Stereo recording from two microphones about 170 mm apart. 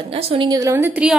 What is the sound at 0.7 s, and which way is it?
Speech, 10° right (ahead or behind).